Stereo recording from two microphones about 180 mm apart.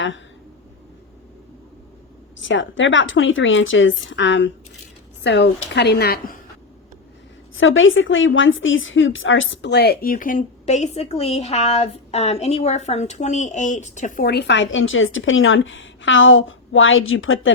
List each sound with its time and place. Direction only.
2.4 s a woman's voice: 90° left
5.2 s a woman's voice: 70° left (ahead or behind); by 6.4 s 55° left (ahead or behind)
7.5 s a woman's voice: 90° left